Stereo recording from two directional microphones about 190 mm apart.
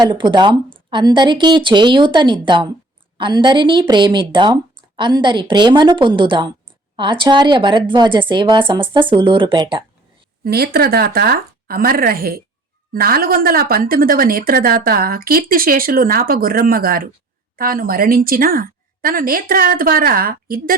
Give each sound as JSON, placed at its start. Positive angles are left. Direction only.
{"t": 0.0, "sound": "a woman's voice", "side_deg": -25}
{"t": 10.4, "sound": "speech", "side_deg": -55}